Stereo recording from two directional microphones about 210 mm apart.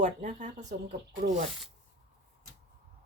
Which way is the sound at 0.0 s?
35° right (ahead or behind).